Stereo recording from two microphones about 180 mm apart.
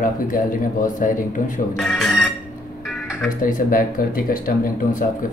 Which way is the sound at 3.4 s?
50° left (ahead or behind).